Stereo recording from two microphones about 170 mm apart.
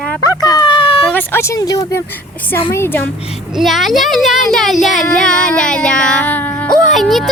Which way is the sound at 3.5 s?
Centre (ahead or behind).